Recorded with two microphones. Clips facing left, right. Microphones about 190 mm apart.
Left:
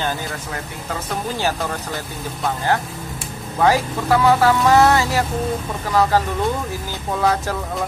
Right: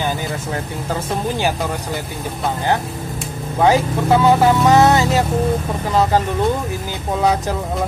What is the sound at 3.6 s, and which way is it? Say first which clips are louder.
Speech: right 3 dB; 20° right (ahead or behind).